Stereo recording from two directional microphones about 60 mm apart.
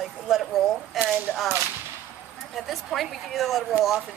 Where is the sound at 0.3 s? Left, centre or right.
Centre.